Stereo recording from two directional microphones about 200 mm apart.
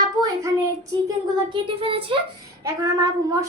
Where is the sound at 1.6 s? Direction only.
25° right (ahead or behind).